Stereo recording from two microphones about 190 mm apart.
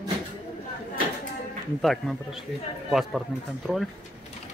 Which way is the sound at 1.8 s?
Centre (ahead or behind).